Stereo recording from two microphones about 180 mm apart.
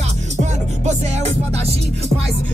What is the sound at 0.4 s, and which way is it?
Music, 40° right (ahead or behind).